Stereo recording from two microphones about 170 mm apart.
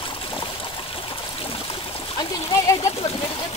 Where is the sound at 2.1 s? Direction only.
20° left (ahead or behind).